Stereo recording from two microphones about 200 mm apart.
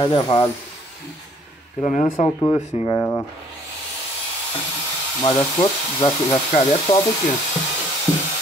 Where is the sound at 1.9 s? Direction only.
40° left (ahead or behind).